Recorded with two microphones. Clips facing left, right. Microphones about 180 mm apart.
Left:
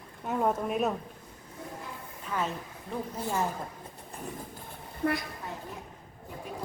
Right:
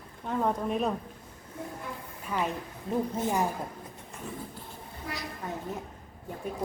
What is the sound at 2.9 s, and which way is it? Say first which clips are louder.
Speech: right 5 dB; 20° right (ahead or behind).